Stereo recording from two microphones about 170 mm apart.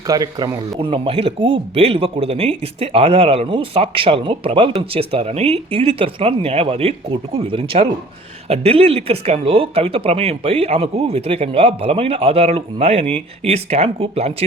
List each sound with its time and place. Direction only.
0.1 s a man's voice: 20° right (ahead or behind)
0.8 s speech: 35° right (ahead or behind)